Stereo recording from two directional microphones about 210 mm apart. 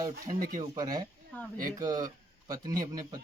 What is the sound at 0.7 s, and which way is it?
Speech, 20° right (ahead or behind).